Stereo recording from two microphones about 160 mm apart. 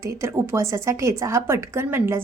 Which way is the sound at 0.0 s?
20° right (ahead or behind).